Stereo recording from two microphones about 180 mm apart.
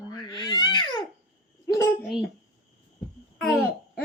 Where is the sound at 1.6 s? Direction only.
15° left (ahead or behind).